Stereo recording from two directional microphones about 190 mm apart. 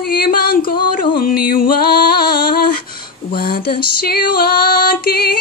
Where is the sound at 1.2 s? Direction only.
50° left (ahead or behind).